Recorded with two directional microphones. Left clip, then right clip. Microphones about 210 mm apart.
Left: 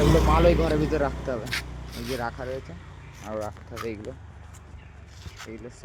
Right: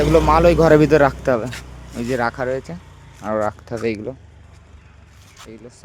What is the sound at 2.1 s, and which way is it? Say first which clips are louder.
Speech: right 12 dB; 50° right (ahead or behind).